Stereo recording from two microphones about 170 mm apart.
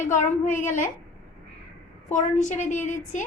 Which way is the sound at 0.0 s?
50° left (ahead or behind).